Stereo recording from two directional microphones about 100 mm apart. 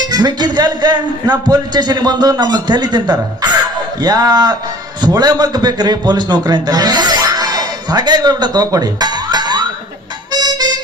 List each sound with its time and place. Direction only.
0.1 s a man's voice: 45° right (ahead or behind)
10.3 s music: 40° right (ahead or behind)